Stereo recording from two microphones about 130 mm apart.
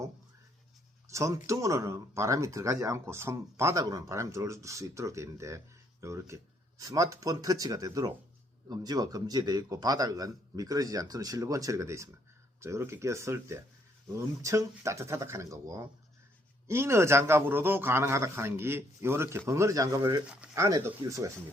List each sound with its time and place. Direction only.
1.0 s speech: 25° right (ahead or behind)